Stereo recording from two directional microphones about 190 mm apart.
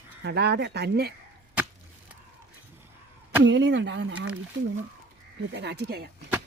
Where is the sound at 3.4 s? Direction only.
70° right (ahead or behind).